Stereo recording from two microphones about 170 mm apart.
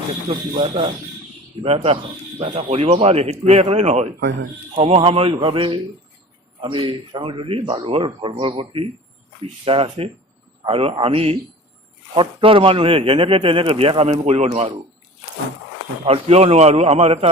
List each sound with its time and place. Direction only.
0.3 s speech: 35° right (ahead or behind)
4.2 s a man's voice: 90° right
4.7 s speech: 35° right (ahead or behind)
16.0 s speech: 35° right (ahead or behind)